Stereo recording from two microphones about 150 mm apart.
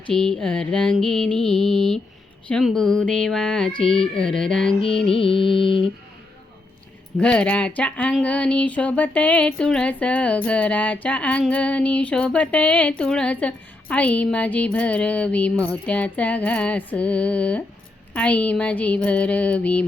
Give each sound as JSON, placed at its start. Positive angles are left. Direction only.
{"t": 0.1, "sound": "mantra", "side_deg": 5}
{"t": 5.1, "sound": "mantra", "side_deg": 35}
{"t": 7.2, "sound": "speech", "side_deg": 5}